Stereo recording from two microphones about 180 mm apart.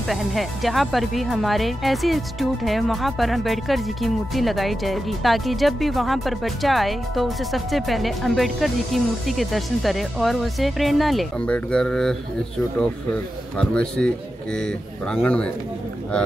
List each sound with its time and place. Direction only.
0.1 s speech: centre (ahead or behind)
13.6 s speech: 5° left (ahead or behind)